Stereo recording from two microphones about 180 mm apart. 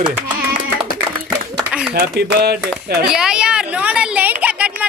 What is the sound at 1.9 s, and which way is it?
Speech, 60° right (ahead or behind).